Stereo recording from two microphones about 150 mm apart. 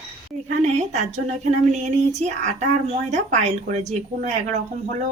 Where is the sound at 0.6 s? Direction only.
50° right (ahead or behind).